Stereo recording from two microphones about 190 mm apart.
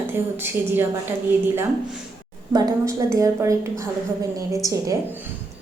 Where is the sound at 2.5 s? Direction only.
20° right (ahead or behind).